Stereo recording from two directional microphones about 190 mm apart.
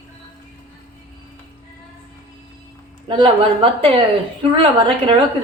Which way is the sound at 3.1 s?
25° right (ahead or behind).